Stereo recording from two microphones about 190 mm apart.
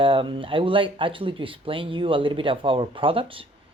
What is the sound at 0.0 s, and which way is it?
Speech, 25° right (ahead or behind).